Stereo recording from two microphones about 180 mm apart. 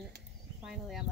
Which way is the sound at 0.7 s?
Centre (ahead or behind).